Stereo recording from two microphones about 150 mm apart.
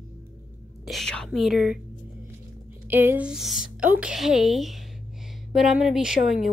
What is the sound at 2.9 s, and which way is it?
Speech, 15° right (ahead or behind).